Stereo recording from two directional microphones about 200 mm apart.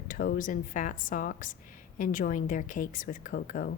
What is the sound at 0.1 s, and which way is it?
A woman's voice, 45° left (ahead or behind).